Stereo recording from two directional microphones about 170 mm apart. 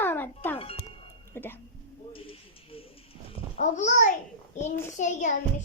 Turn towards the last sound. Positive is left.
turn(degrees=45)  # may be behind; listen again after turning